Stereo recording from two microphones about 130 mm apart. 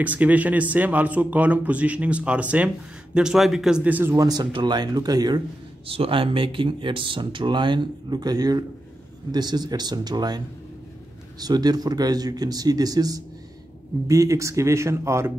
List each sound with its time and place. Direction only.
0.0 s speech: 10° right (ahead or behind)
4.2 s speech: 30° right (ahead or behind)
5.9 s speech: 45° right (ahead or behind); by 15.3 s 20° right (ahead or behind)